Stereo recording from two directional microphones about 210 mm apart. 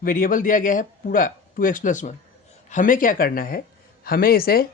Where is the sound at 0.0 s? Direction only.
40° left (ahead or behind).